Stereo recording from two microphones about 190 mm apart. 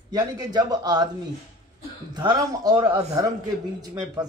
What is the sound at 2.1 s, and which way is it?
Speech, 20° right (ahead or behind).